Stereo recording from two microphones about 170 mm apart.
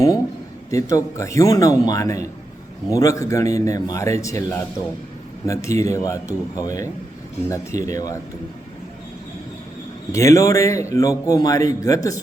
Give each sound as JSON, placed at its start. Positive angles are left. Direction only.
{"t": 0.7, "sound": "a man's voice", "side_deg": 20}
{"t": 10.1, "sound": "a man's voice", "side_deg": 20}